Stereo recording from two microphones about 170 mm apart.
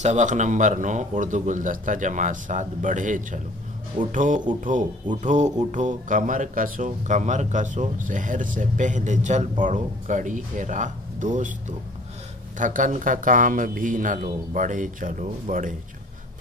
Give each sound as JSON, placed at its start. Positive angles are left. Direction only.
{"t": 0.0, "sound": "speech", "side_deg": -45}
{"t": 12.5, "sound": "speech", "side_deg": -50}